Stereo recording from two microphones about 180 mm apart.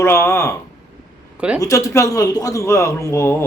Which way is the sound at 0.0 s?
15° left (ahead or behind).